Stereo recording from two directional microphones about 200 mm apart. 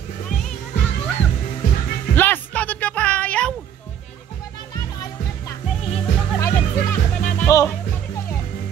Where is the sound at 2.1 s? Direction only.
10° left (ahead or behind).